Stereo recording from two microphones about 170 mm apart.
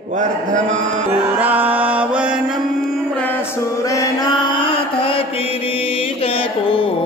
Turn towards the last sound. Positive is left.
turn(degrees=30)  # may be behind; listen again after turning